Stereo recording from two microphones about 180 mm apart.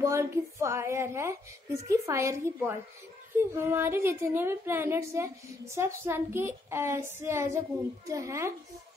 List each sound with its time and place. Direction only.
0.0 s a woman's voice: 15° right (ahead or behind)